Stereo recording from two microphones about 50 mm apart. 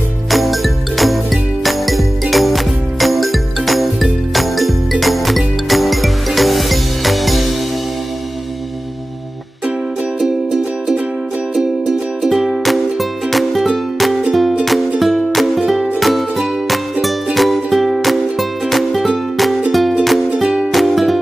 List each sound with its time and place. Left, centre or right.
0.3 s music: centre
10.2 s music: centre
12.2 s music: centre